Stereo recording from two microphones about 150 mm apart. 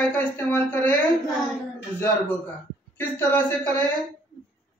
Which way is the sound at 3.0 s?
10° left (ahead or behind).